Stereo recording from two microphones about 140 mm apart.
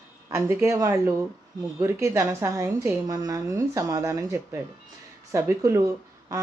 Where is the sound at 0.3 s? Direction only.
20° right (ahead or behind).